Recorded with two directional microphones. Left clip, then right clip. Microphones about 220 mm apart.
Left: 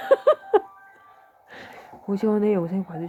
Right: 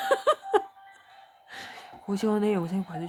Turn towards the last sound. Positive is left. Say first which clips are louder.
# left 5 dB
turn(degrees=-20)  # may be behind; listen again after turning